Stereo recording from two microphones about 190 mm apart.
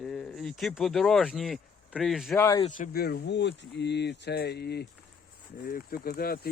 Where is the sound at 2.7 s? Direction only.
50° left (ahead or behind).